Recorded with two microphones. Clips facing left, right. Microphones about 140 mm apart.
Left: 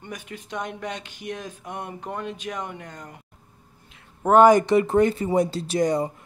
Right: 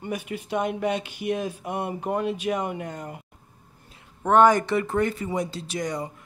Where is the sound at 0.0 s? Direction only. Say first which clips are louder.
Right 6 dB; 10° right (ahead or behind).